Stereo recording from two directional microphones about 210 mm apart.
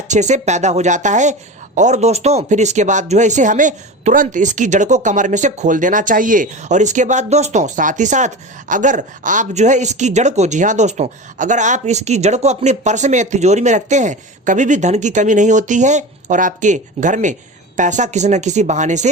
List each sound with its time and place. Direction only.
0.1 s speech: 35° right (ahead or behind)